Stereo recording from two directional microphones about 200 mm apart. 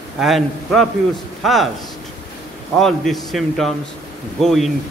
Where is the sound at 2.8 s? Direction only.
Centre (ahead or behind).